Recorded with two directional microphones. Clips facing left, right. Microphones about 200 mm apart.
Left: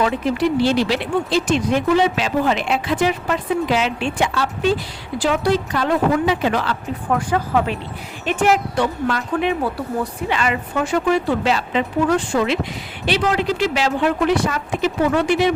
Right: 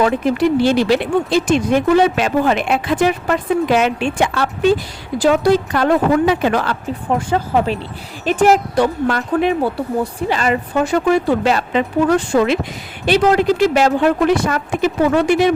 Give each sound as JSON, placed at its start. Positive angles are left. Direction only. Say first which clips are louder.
{"t": 0.0, "sound": "speech", "louder": "right 4 dB", "side_deg": -50}
{"t": 5.1, "sound": "speech", "louder": "right 5 dB", "side_deg": -45}
{"t": 7.1, "sound": "speech", "louder": "right 2 dB", "side_deg": -25}
{"t": 9.6, "sound": "speech", "louder": "right 4 dB", "side_deg": -25}
{"t": 10.3, "sound": "speech", "louder": "right 4 dB", "side_deg": -40}